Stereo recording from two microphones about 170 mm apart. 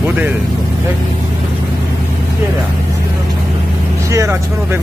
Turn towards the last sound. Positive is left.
turn(degrees=-15)  # may be behind; listen again after turning